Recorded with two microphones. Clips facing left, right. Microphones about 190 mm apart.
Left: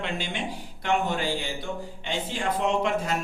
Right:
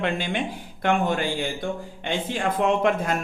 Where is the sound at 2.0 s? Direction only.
55° right (ahead or behind).